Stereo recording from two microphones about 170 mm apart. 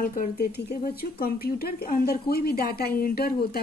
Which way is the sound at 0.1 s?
60° left (ahead or behind).